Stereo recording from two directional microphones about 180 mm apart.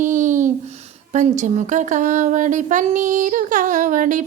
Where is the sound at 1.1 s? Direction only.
40° right (ahead or behind).